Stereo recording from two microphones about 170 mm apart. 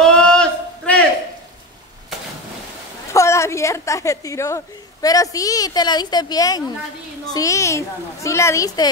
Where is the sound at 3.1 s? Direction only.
15° left (ahead or behind).